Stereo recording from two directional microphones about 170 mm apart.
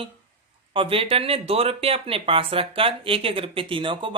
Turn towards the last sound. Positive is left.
turn(degrees=-30)  # may be behind; listen again after turning